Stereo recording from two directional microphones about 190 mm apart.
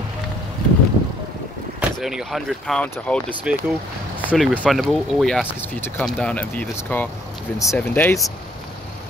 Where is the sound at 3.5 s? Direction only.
5° right (ahead or behind); by 8.2 s 10° left (ahead or behind).